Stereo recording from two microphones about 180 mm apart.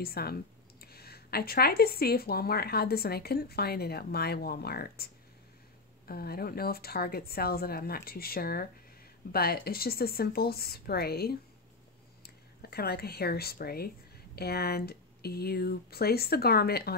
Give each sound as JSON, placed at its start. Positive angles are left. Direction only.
{"t": 0.0, "sound": "speech", "side_deg": 60}
{"t": 12.6, "sound": "speech", "side_deg": 60}